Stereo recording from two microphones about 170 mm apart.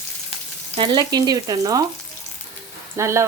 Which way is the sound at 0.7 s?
25° right (ahead or behind).